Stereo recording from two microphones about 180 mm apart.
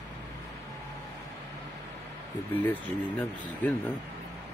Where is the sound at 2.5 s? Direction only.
10° left (ahead or behind).